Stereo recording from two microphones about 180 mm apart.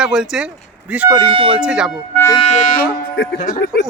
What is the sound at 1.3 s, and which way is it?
Speech, 30° right (ahead or behind).